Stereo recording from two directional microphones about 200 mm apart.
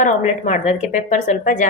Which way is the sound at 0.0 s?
35° left (ahead or behind).